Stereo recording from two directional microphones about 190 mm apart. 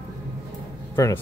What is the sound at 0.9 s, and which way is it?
Speech, 15° left (ahead or behind).